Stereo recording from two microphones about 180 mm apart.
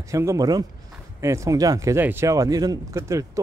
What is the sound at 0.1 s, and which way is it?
Speech, 15° right (ahead or behind).